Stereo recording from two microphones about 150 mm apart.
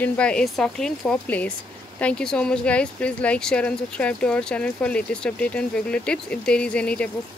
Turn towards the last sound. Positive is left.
turn(degrees=5)  # may be behind; listen again after turning